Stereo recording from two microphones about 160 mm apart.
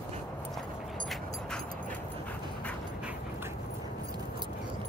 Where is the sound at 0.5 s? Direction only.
5° left (ahead or behind).